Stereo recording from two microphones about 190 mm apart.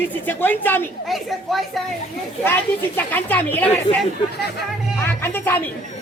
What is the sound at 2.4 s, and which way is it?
Speech, 10° left (ahead or behind).